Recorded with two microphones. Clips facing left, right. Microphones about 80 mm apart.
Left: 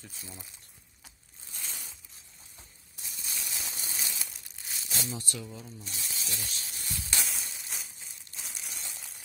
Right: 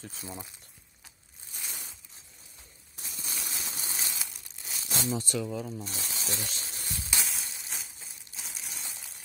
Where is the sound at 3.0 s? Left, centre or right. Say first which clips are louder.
Right 2 dB; right.